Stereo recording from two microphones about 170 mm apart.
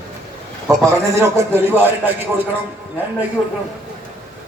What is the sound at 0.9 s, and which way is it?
A man's voice, 15° right (ahead or behind).